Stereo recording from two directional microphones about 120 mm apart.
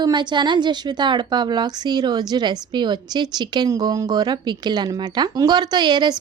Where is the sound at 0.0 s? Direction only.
40° right (ahead or behind).